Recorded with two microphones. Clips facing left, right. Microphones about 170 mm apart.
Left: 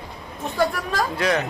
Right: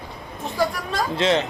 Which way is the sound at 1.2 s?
25° right (ahead or behind).